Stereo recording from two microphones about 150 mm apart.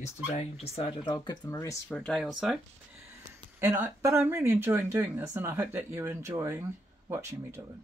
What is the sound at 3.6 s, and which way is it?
Speech, 20° right (ahead or behind).